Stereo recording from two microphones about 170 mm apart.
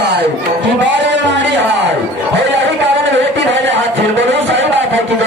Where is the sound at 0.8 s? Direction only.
90° right.